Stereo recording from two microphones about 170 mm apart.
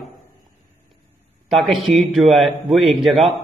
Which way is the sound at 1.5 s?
Centre (ahead or behind).